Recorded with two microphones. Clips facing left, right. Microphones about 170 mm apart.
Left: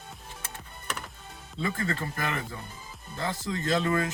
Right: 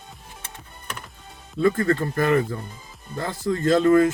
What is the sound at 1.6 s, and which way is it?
Speech, 50° right (ahead or behind).